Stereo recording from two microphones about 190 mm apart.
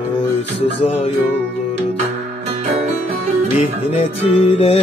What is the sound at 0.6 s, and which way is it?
Music, 30° left (ahead or behind).